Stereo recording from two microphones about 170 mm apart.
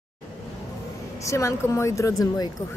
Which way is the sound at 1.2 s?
15° left (ahead or behind).